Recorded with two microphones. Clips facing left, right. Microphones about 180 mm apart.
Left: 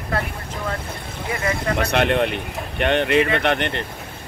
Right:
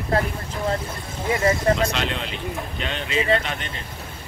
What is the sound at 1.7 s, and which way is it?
Speech, 60° left (ahead or behind).